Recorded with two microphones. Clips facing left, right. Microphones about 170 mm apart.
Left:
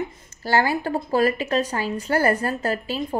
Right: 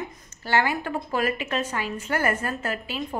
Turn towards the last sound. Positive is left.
turn(degrees=35)  # may be behind; listen again after turning